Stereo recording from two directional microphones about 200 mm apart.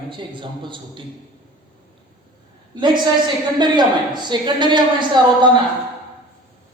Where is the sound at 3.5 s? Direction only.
20° right (ahead or behind).